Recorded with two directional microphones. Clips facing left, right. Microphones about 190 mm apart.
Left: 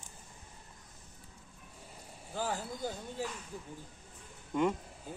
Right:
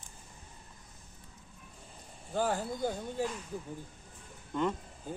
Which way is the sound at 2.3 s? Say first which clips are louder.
Right 5 dB; 50° right (ahead or behind).